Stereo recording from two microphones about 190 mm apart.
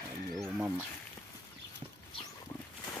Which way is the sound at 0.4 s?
5° right (ahead or behind).